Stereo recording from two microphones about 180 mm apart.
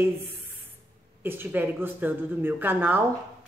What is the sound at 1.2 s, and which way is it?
Speech, 10° right (ahead or behind).